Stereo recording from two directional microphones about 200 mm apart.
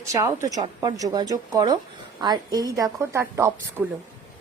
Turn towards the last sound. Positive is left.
turn(degrees=-10)  # may be behind; listen again after turning